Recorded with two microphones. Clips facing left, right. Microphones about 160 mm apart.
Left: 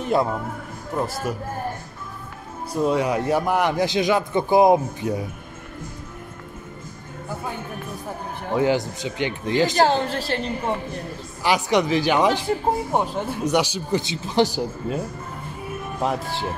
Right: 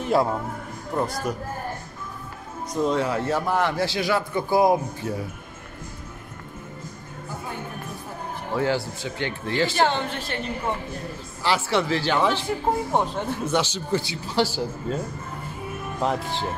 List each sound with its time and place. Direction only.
0.0 s speech: centre (ahead or behind)
2.7 s a man's voice: 10° left (ahead or behind)
8.5 s a man's voice: 15° left (ahead or behind)
9.8 s a woman's voice: 35° left (ahead or behind)
11.4 s a man's voice: 15° left (ahead or behind)
16.0 s a man's voice: 10° left (ahead or behind)